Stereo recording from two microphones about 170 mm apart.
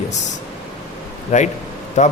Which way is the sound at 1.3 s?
45° left (ahead or behind).